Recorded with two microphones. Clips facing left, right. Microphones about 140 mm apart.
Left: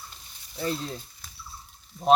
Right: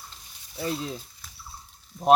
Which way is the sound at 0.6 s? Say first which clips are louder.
Even; 5° right (ahead or behind).